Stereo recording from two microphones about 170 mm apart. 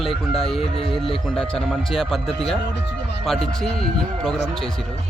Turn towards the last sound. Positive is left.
turn(degrees=5)  # may be behind; listen again after turning